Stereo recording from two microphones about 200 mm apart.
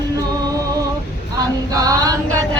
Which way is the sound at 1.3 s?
20° right (ahead or behind).